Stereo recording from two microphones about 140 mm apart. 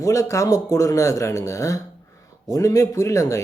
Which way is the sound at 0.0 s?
25° left (ahead or behind).